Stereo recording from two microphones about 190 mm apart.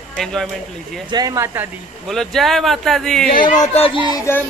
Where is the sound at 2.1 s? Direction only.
Centre (ahead or behind).